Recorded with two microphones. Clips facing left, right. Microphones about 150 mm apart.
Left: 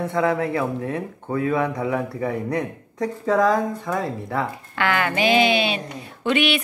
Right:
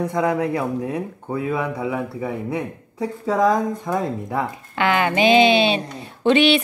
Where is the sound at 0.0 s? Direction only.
15° right (ahead or behind).